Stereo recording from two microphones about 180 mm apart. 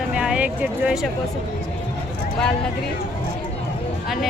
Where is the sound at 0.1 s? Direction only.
5° right (ahead or behind).